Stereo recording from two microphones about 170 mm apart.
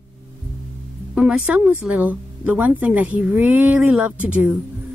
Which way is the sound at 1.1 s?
5° right (ahead or behind).